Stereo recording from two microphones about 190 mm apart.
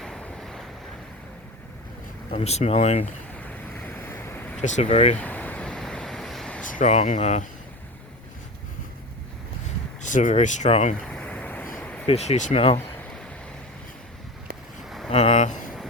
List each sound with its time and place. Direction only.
0.0 s waves: 5° left (ahead or behind)
2.3 s speech: 35° left (ahead or behind)
3.3 s a sound: 10° left (ahead or behind)
4.6 s speech: 35° left (ahead or behind)
5.1 s a sound: 10° left (ahead or behind)
6.7 s speech: 40° left (ahead or behind)
10.0 s speech: 40° left (ahead or behind)
11.1 s a sound: 5° left (ahead or behind)
12.0 s speech: 35° left (ahead or behind)
14.8 s vehicle: centre (ahead or behind)
15.1 s speech: 35° left (ahead or behind)